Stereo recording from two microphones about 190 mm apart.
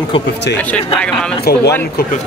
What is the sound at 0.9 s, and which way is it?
Speech, 5° left (ahead or behind).